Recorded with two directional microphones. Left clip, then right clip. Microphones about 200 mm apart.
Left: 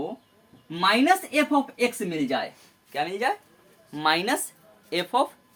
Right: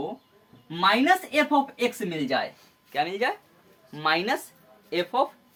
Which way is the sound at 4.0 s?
20° left (ahead or behind).